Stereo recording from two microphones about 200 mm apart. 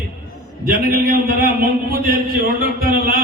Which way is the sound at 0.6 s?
50° right (ahead or behind).